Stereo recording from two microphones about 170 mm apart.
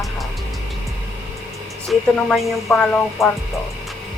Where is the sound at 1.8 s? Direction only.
Centre (ahead or behind).